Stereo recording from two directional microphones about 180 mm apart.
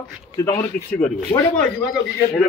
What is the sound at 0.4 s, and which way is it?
Speech, 20° left (ahead or behind).